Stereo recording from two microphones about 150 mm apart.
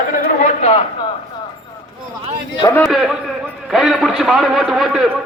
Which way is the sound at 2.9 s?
Centre (ahead or behind).